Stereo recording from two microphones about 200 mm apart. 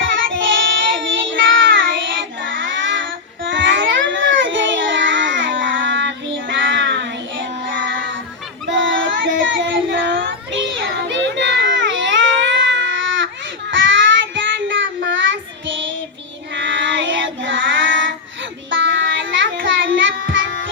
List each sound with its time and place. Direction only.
0.0 s child singing: 70° right (ahead or behind)